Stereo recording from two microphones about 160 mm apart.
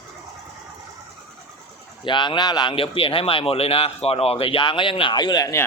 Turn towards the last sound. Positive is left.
turn(degrees=25)  # may be behind; listen again after turning